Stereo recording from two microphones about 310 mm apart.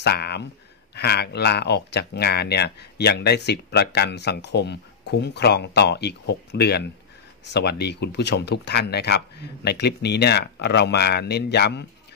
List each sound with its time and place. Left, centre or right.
0.0 s speech: left